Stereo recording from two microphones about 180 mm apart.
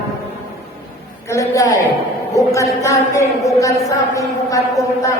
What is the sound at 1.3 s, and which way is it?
A woman's voice, 15° left (ahead or behind).